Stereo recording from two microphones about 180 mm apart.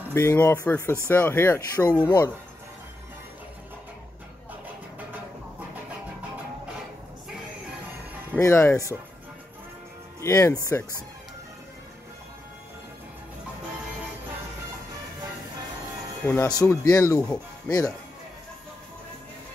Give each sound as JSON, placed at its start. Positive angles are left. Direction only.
{"t": 0.1, "sound": "speech", "side_deg": 10}
{"t": 8.4, "sound": "speech", "side_deg": 15}
{"t": 10.2, "sound": "speech", "side_deg": 15}
{"t": 16.4, "sound": "speech", "side_deg": 20}